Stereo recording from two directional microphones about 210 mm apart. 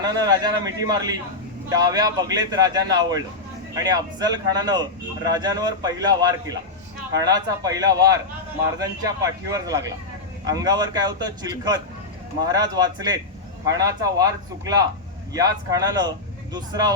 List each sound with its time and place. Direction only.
0.0 s a man's voice: 20° right (ahead or behind)